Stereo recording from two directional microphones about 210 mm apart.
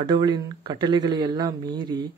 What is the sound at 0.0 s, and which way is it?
Speech, 20° right (ahead or behind).